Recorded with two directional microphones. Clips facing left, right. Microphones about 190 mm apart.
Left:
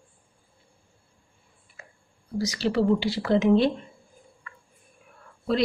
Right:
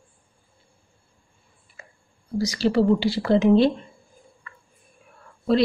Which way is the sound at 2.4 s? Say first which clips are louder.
Right 4 dB; 35° right (ahead or behind).